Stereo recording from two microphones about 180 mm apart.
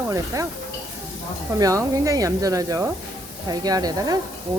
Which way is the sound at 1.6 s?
20° right (ahead or behind).